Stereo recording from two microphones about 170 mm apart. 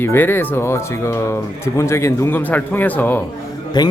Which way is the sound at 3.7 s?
25° left (ahead or behind).